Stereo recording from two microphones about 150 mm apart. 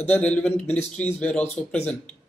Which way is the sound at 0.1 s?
10° left (ahead or behind).